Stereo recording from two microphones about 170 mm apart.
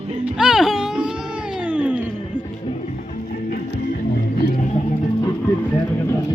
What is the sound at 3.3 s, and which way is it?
Music, 55° left (ahead or behind).